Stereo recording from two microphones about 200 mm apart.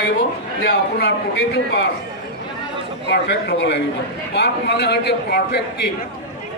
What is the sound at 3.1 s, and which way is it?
A man's voice, 55° left (ahead or behind).